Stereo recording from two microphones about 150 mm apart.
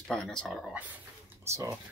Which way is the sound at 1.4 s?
20° right (ahead or behind).